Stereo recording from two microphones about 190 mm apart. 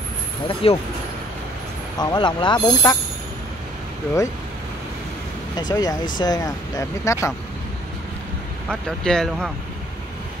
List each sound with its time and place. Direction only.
0.5 s speech: 30° left (ahead or behind)
2.0 s speech: 25° left (ahead or behind)
5.6 s speech: 20° left (ahead or behind)
8.6 s speech: 5° left (ahead or behind)